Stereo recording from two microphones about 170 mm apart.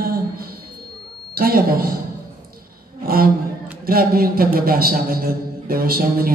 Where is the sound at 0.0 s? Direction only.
60° right (ahead or behind).